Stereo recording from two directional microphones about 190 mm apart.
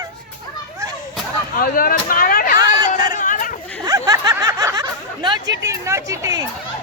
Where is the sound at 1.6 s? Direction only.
50° left (ahead or behind).